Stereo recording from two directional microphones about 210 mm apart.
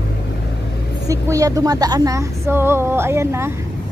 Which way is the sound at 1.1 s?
15° right (ahead or behind).